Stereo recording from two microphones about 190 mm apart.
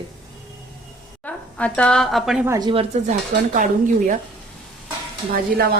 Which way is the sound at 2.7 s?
30° right (ahead or behind).